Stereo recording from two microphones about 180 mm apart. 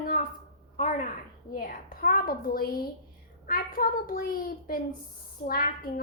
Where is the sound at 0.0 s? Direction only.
50° left (ahead or behind).